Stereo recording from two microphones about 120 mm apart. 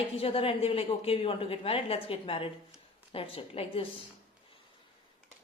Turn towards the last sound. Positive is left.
turn(degrees=50)  # may be behind; listen again after turning